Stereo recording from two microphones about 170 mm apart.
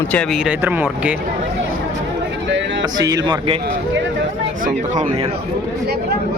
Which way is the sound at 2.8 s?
20° right (ahead or behind).